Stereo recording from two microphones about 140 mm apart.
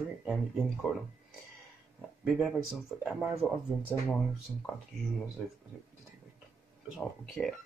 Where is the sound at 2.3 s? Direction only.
5° right (ahead or behind).